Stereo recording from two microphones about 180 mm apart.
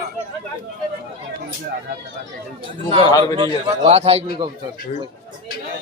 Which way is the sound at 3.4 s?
25° right (ahead or behind).